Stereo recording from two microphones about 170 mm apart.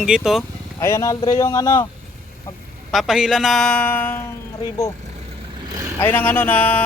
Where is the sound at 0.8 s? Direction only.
15° left (ahead or behind).